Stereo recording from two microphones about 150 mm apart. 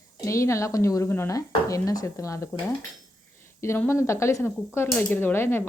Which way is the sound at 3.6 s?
15° left (ahead or behind).